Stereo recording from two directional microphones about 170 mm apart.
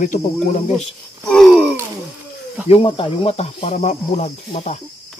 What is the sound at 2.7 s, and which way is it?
Speech, 30° left (ahead or behind).